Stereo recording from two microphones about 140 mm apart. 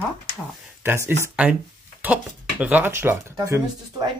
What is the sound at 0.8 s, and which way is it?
Speech, 15° right (ahead or behind).